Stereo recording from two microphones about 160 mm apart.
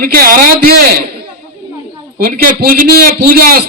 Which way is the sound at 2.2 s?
65° right (ahead or behind).